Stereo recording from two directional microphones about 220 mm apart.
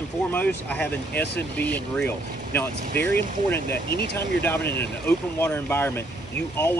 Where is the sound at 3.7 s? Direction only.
45° left (ahead or behind).